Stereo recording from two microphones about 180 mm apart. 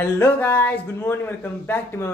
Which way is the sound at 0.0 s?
10° left (ahead or behind).